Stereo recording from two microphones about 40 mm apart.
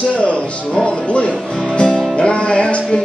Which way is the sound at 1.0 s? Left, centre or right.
Left.